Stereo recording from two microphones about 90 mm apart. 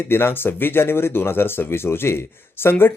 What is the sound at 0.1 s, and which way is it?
Speech, 25° left (ahead or behind).